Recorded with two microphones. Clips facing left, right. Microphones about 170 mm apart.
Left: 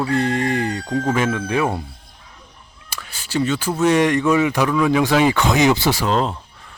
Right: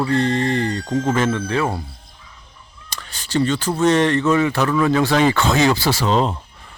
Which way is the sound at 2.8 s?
10° left (ahead or behind).